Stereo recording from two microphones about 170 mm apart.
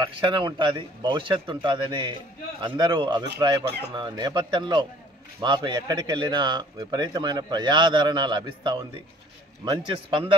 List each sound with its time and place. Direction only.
0.0 s speech: 30° right (ahead or behind)